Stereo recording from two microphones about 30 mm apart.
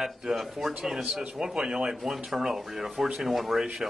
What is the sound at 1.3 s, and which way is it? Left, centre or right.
Speech, right.